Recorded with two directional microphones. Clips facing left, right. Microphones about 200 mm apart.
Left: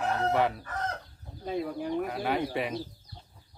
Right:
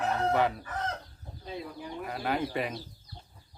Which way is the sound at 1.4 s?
50° left (ahead or behind).